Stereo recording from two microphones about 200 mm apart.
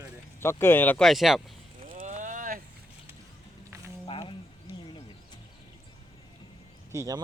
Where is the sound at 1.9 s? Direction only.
40° right (ahead or behind).